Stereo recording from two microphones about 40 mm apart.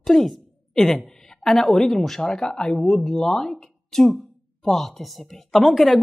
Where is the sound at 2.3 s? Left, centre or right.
Left.